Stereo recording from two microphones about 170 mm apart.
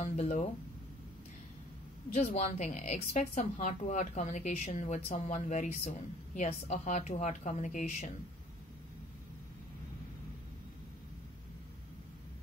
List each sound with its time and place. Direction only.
0.0 s a woman's voice: 45° left (ahead or behind)
2.1 s a woman's voice: 45° left (ahead or behind)